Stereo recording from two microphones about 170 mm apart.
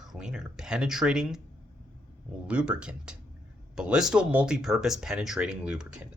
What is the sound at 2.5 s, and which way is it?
Speech, 5° right (ahead or behind).